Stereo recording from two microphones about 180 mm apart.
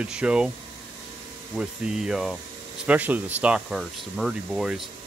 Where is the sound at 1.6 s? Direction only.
5° right (ahead or behind).